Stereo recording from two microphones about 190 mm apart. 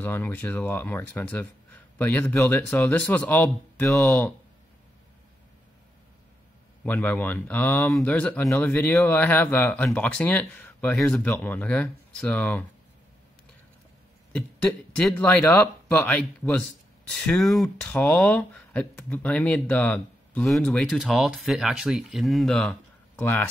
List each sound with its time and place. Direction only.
0.0 s speech: 10° left (ahead or behind)
6.8 s speech: 10° left (ahead or behind)
14.3 s speech: 5° left (ahead or behind)